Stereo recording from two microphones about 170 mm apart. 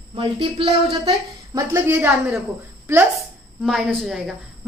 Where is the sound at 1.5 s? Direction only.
15° right (ahead or behind).